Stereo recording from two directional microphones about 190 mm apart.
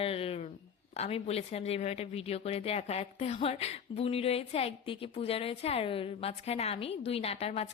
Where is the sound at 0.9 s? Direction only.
30° left (ahead or behind).